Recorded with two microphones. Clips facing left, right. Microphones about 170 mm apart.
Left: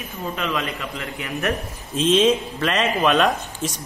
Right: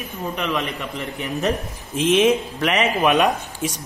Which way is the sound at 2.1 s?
10° right (ahead or behind).